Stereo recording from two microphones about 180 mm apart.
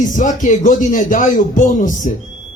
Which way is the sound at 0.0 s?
45° left (ahead or behind).